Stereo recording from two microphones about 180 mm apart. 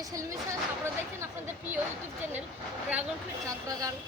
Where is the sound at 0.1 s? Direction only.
15° right (ahead or behind).